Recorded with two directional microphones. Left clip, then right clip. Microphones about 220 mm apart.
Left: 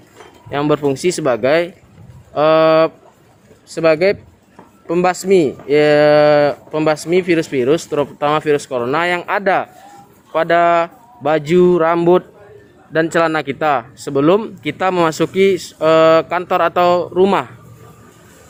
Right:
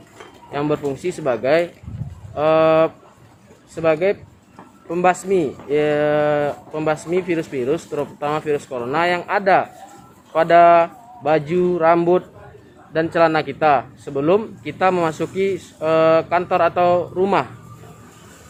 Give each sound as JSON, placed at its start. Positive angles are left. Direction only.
{"t": 0.5, "sound": "speech", "side_deg": 50}